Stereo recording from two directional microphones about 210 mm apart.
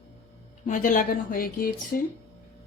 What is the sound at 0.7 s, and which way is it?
Speech, 40° left (ahead or behind).